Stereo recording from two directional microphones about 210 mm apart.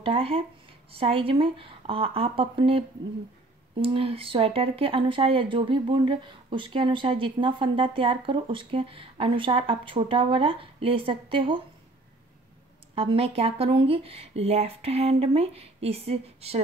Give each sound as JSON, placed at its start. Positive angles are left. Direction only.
{"t": 0.0, "sound": "speech", "side_deg": -25}
{"t": 3.8, "sound": "speech", "side_deg": -25}
{"t": 12.9, "sound": "speech", "side_deg": -25}